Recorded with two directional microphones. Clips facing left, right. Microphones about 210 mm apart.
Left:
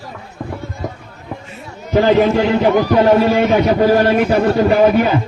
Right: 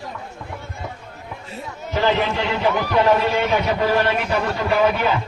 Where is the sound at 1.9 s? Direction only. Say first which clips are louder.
Left 9 dB; 45° left (ahead or behind).